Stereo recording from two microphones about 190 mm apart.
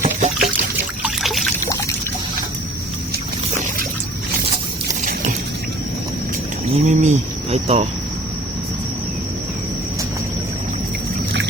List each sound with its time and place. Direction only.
0.0 s pour: 45° right (ahead or behind)
1.0 s trickle: centre (ahead or behind)
6.7 s a sound: 40° right (ahead or behind)